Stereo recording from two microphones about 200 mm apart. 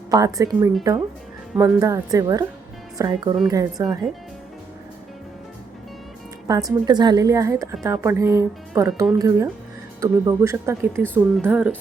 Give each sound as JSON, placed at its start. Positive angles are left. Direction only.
{"t": 0.1, "sound": "speech", "side_deg": -20}
{"t": 6.5, "sound": "speech", "side_deg": -20}